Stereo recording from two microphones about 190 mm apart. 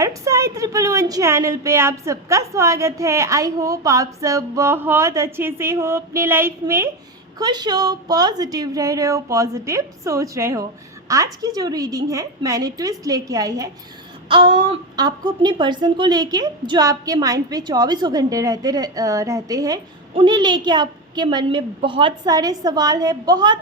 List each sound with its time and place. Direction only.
0.0 s a woman's voice: 15° right (ahead or behind)